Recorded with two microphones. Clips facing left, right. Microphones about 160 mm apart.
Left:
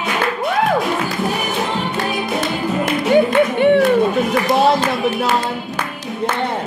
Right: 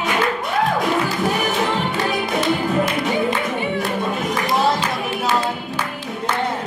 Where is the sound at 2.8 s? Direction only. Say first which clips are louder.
Left 6 dB; 70° left (ahead or behind).